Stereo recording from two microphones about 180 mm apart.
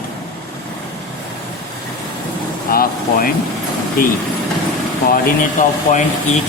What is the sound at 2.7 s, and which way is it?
Speech, 55° left (ahead or behind).